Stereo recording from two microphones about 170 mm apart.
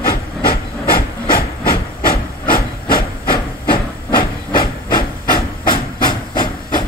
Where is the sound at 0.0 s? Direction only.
60° left (ahead or behind).